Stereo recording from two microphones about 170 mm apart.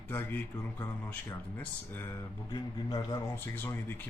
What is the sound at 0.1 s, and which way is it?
A man's voice, 10° left (ahead or behind).